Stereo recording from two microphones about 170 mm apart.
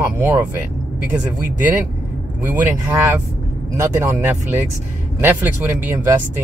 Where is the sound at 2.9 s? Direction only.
15° right (ahead or behind).